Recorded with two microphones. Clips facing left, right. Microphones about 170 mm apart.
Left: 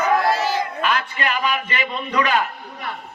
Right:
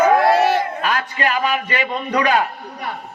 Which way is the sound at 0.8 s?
45° right (ahead or behind).